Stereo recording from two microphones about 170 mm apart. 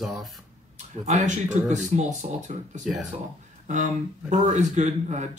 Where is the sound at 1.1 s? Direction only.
40° right (ahead or behind).